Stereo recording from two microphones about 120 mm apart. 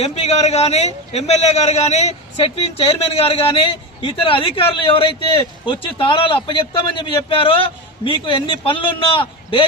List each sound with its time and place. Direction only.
0.0 s a man's voice: 60° left (ahead or behind)